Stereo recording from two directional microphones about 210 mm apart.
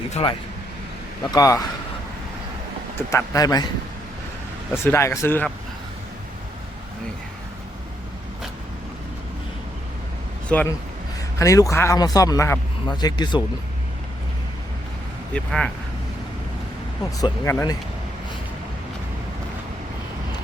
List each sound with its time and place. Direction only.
0.1 s a man's voice: 25° left (ahead or behind)
3.1 s a man's voice: 15° left (ahead or behind)
4.7 s a man's voice: 10° left (ahead or behind)
10.5 s a man's voice: 5° left (ahead or behind)
15.3 s speech: 5° left (ahead or behind)
17.2 s a man's voice: 15° left (ahead or behind)